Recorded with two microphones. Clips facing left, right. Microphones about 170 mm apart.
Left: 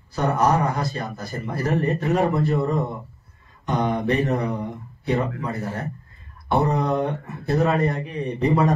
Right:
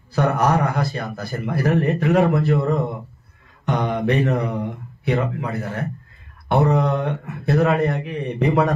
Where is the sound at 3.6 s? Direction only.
65° right (ahead or behind).